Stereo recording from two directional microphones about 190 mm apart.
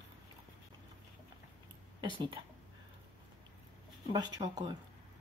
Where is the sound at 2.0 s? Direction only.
25° right (ahead or behind).